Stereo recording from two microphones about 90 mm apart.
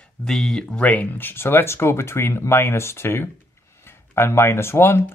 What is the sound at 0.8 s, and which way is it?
Speech, 15° left (ahead or behind).